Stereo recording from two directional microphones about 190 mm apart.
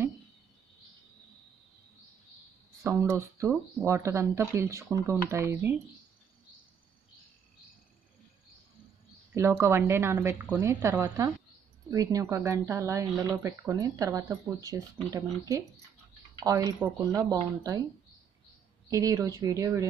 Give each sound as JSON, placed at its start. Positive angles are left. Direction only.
{"t": 2.8, "sound": "speech", "side_deg": -15}
{"t": 9.3, "sound": "speech", "side_deg": -15}
{"t": 18.9, "sound": "speech", "side_deg": -15}